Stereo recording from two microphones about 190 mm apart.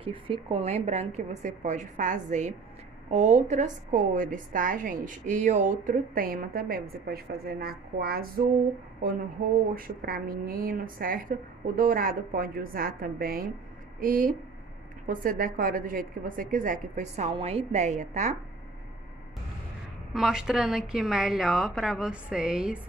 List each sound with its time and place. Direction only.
0.0 s a woman's voice: 30° right (ahead or behind); by 8.5 s 50° right (ahead or behind)
9.8 s a woman's voice: 50° right (ahead or behind)
20.1 s a woman's voice: 5° right (ahead or behind)